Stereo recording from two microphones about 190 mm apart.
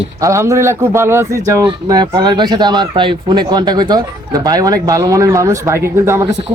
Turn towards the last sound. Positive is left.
turn(degrees=-15)  # may be behind; listen again after turning